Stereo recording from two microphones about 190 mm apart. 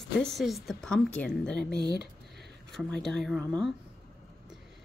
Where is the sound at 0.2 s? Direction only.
Centre (ahead or behind).